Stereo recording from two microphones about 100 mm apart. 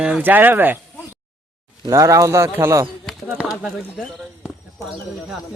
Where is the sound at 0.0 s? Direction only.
15° right (ahead or behind).